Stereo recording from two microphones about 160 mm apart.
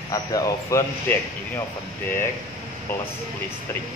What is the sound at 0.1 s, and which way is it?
Speech, 20° left (ahead or behind).